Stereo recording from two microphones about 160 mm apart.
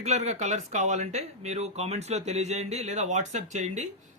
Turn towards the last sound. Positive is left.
turn(degrees=-50)  # may be behind; listen again after turning